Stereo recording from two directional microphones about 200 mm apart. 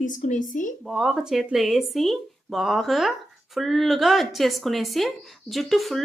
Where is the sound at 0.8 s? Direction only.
Centre (ahead or behind).